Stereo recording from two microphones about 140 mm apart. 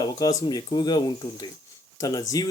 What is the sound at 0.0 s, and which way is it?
Speech, 25° left (ahead or behind).